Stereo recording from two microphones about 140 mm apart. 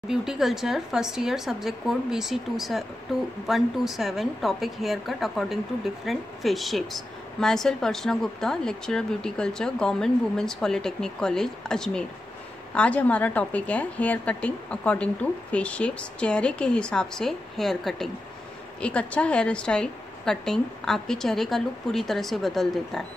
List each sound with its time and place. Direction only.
0.1 s a woman's voice: 5° right (ahead or behind)